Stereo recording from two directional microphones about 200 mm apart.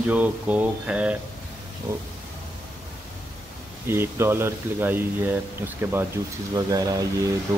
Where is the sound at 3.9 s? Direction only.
10° right (ahead or behind).